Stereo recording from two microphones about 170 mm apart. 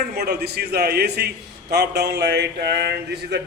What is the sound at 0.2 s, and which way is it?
Speech, 70° right (ahead or behind).